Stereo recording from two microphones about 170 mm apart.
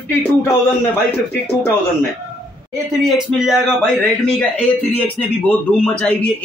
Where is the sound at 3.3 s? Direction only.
Centre (ahead or behind).